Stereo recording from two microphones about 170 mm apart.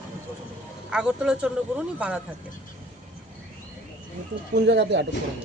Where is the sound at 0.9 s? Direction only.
5° right (ahead or behind).